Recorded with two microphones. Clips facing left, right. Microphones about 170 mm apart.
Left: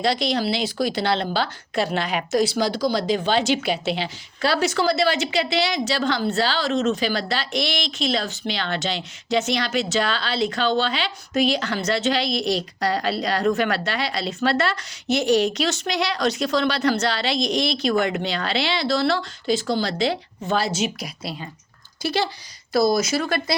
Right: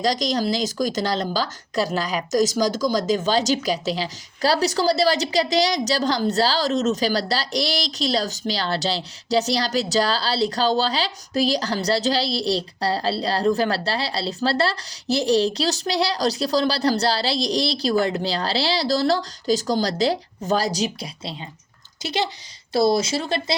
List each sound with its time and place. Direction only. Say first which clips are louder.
0.0 s a woman's voice: even; 40° right (ahead or behind)